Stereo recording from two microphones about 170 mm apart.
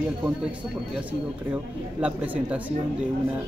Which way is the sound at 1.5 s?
10° right (ahead or behind).